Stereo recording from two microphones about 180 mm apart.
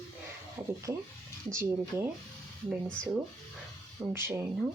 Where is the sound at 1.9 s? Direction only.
15° right (ahead or behind).